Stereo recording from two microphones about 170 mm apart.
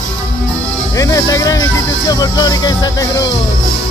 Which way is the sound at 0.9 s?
20° left (ahead or behind).